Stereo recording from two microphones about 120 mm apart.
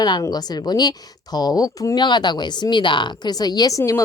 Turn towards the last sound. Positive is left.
turn(degrees=25)  # may be behind; listen again after turning